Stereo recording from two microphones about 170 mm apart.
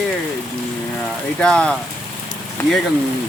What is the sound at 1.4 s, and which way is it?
Speech, 5° left (ahead or behind).